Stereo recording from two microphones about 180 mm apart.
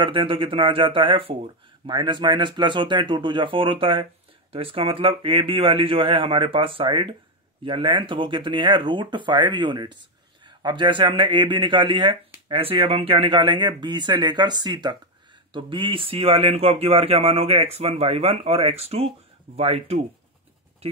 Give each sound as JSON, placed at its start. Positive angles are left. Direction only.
{"t": 0.0, "sound": "speech", "side_deg": -30}